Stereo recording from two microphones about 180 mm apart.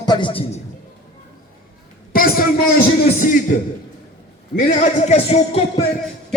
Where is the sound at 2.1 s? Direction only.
55° left (ahead or behind).